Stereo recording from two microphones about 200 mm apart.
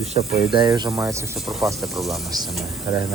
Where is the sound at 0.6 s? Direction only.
20° right (ahead or behind).